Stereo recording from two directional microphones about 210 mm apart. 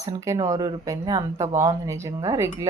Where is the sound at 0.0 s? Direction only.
15° right (ahead or behind).